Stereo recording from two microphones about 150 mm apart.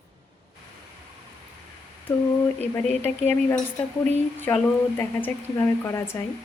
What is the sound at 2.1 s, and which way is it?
Speech, 15° left (ahead or behind).